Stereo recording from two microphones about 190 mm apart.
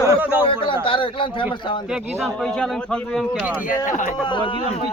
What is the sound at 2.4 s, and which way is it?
Speech, centre (ahead or behind).